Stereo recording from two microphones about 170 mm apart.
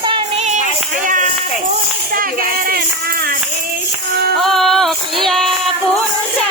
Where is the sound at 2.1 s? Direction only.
55° right (ahead or behind).